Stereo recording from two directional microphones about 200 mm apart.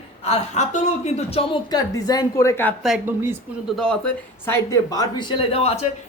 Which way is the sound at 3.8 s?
5° left (ahead or behind).